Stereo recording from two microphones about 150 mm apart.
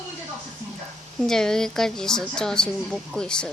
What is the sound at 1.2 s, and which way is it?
A woman's voice, 5° left (ahead or behind).